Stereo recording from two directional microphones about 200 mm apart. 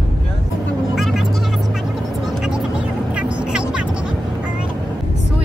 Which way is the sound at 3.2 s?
5° right (ahead or behind).